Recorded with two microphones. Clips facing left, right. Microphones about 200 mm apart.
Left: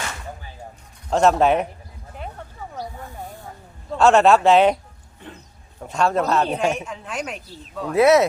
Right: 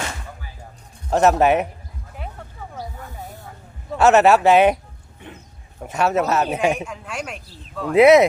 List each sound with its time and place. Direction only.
1.1 s speech: 5° right (ahead or behind)
3.9 s speech: 5° right (ahead or behind)
5.8 s speech: 5° right (ahead or behind)
7.9 s speech: 15° right (ahead or behind)